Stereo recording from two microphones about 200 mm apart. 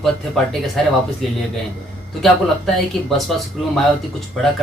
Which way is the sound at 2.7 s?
Centre (ahead or behind).